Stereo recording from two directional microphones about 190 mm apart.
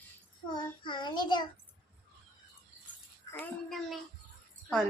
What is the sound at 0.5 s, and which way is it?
Child singing, 25° left (ahead or behind).